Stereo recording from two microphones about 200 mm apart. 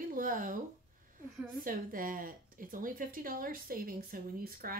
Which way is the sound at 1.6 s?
45° right (ahead or behind).